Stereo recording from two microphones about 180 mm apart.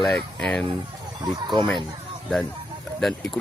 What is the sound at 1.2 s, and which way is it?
Speech, 20° right (ahead or behind).